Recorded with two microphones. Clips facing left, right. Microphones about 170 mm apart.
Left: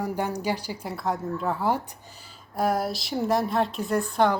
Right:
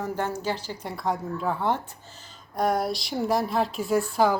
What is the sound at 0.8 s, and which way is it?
A woman's voice, centre (ahead or behind).